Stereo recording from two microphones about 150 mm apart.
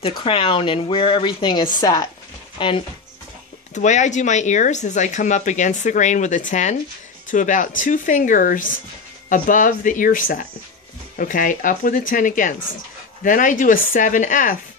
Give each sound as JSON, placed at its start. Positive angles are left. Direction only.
{"t": 0.0, "sound": "speech", "side_deg": 40}
{"t": 3.7, "sound": "speech", "side_deg": 50}